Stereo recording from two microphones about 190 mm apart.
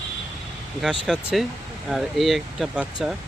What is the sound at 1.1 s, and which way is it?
Speech, centre (ahead or behind).